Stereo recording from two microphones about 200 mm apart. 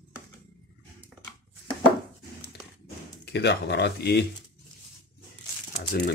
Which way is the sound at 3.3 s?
55° left (ahead or behind).